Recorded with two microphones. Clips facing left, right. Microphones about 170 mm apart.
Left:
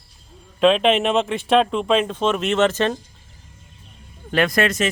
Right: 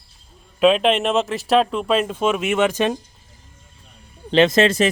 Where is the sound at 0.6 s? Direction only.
Centre (ahead or behind).